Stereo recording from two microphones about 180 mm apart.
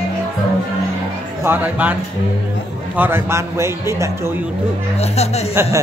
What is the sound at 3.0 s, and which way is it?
A man's voice, 15° right (ahead or behind).